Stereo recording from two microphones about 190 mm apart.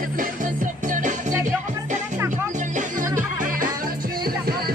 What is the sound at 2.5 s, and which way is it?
Music, 40° right (ahead or behind).